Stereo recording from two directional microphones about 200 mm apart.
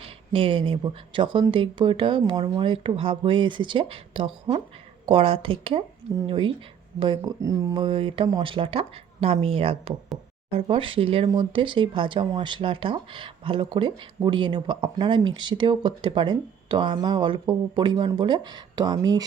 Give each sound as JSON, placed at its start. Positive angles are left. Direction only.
{"t": 0.0, "sound": "speech", "side_deg": -25}
{"t": 7.2, "sound": "speech", "side_deg": -15}